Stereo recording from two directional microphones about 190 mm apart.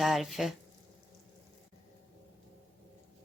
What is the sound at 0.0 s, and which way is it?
Speech, centre (ahead or behind).